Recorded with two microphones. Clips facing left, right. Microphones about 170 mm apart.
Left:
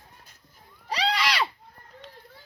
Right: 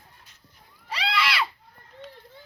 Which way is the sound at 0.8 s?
40° left (ahead or behind).